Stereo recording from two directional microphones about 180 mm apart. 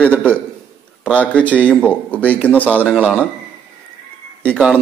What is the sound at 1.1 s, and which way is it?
A man's voice, 5° left (ahead or behind).